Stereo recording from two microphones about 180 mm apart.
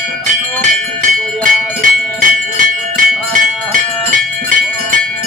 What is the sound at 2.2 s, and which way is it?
Music, 50° right (ahead or behind).